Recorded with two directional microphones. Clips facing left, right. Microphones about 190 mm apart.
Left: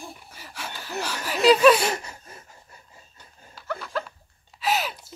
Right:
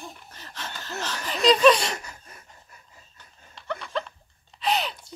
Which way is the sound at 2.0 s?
25° left (ahead or behind).